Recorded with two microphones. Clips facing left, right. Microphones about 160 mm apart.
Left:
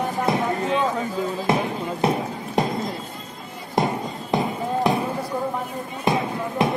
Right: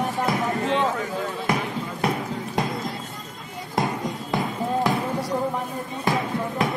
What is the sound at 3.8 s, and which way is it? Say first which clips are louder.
Music: left 2 dB; 20° left (ahead or behind).